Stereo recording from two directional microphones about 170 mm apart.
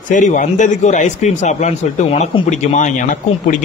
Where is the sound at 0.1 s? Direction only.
45° left (ahead or behind).